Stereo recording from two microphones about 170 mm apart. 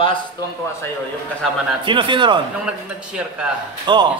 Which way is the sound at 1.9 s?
30° right (ahead or behind).